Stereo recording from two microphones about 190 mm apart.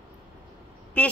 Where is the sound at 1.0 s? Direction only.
5° left (ahead or behind).